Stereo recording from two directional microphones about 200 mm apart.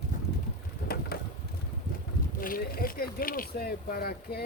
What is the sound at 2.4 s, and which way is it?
Speech, 45° left (ahead or behind).